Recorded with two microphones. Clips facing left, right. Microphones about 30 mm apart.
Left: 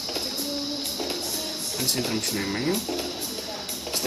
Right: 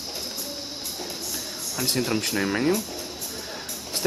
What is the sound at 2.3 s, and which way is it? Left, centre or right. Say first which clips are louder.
Speech: right 6 dB; right.